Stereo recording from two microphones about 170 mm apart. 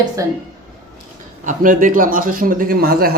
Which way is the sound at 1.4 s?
50° right (ahead or behind).